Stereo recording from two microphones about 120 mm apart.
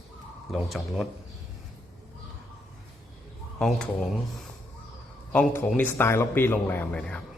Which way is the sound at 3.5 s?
5° left (ahead or behind).